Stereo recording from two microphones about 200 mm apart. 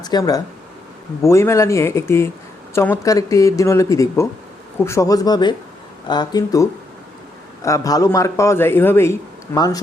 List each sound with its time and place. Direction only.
0.0 s a man's voice: 20° left (ahead or behind)